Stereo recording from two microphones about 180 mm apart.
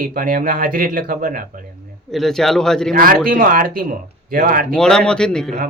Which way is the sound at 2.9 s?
55° right (ahead or behind).